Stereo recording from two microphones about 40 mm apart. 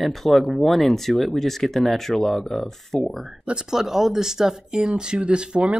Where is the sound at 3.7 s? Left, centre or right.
Centre.